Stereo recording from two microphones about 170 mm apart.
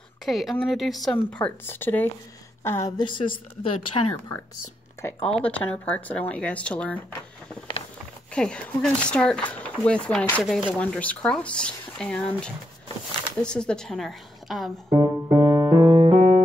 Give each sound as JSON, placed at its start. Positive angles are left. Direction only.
{"t": 0.2, "sound": "a woman's voice", "side_deg": 0}
{"t": 3.0, "sound": "a woman's voice", "side_deg": 30}
{"t": 5.0, "sound": "speech", "side_deg": 10}
{"t": 8.3, "sound": "speech", "side_deg": 5}
{"t": 10.4, "sound": "speech", "side_deg": -5}
{"t": 10.8, "sound": "speech", "side_deg": 10}
{"t": 14.9, "sound": "music", "side_deg": -15}
{"t": 15.9, "sound": "music", "side_deg": -30}
{"t": 16.2, "sound": "music", "side_deg": -40}